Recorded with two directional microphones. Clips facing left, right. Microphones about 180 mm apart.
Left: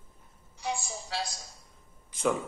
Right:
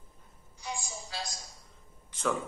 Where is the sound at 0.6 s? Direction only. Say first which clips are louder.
Left 5 dB; 65° left (ahead or behind).